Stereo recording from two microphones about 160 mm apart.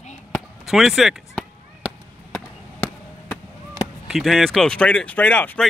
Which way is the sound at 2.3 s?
5° left (ahead or behind).